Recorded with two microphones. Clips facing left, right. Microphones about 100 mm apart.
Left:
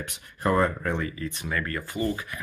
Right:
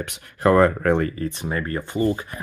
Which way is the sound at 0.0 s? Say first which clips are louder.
Right 8 dB; 75° right (ahead or behind).